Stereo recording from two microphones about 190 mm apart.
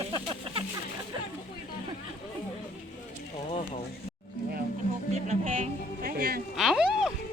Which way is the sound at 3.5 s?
40° left (ahead or behind).